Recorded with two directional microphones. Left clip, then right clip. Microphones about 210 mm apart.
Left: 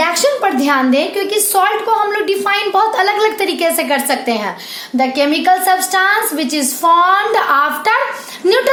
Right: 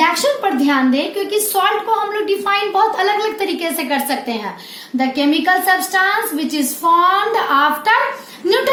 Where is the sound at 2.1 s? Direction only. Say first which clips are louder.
Left 2 dB; 40° left (ahead or behind).